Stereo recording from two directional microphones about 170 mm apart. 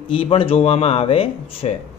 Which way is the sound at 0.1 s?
30° left (ahead or behind).